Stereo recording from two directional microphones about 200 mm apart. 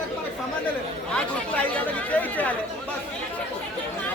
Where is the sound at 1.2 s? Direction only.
5° left (ahead or behind).